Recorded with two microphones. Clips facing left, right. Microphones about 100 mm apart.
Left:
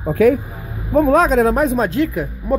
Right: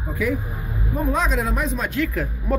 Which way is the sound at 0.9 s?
90° left.